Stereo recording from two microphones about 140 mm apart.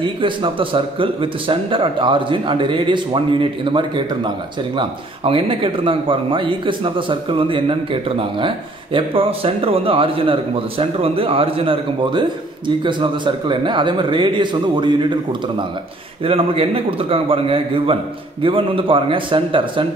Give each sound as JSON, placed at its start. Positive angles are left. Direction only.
{"t": 0.0, "sound": "speech", "side_deg": -35}
{"t": 16.3, "sound": "a man's voice", "side_deg": -45}